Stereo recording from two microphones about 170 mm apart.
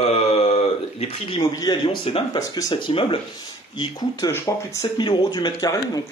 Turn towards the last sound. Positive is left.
turn(degrees=20)  # may be behind; listen again after turning